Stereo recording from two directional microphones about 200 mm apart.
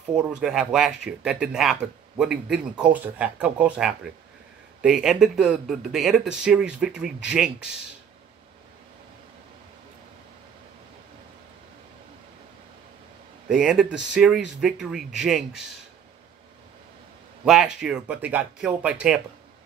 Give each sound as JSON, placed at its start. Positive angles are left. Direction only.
{"t": 0.1, "sound": "speech", "side_deg": -5}
{"t": 13.5, "sound": "speech", "side_deg": -5}
{"t": 17.7, "sound": "speech", "side_deg": -5}